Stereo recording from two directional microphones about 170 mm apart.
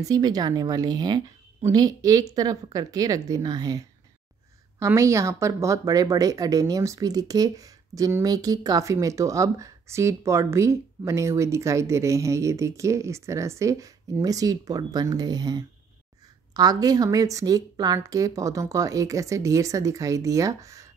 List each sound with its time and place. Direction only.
0.0 s speech: 20° right (ahead or behind)